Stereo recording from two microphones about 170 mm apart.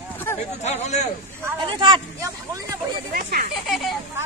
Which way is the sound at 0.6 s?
40° left (ahead or behind).